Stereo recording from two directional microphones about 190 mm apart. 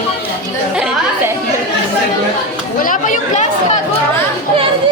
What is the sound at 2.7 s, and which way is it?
Chatter, 45° left (ahead or behind).